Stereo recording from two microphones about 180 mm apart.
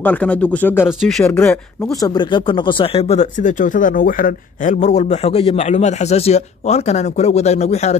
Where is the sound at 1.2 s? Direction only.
10° left (ahead or behind).